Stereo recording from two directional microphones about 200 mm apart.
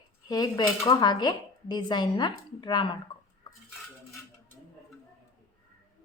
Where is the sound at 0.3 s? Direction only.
20° left (ahead or behind).